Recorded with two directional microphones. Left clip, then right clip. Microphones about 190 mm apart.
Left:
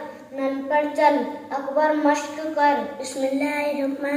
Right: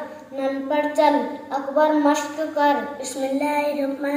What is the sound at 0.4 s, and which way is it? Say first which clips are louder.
A woman's voice: even; 15° right (ahead or behind).